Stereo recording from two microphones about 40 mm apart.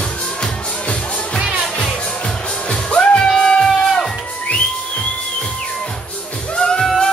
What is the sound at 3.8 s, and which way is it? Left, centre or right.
Music, centre.